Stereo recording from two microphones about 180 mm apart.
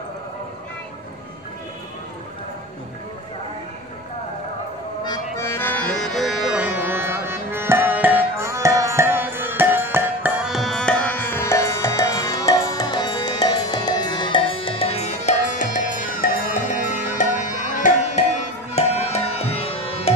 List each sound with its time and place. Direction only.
5.0 s accordion: 20° left (ahead or behind); by 20.2 s 35° left (ahead or behind)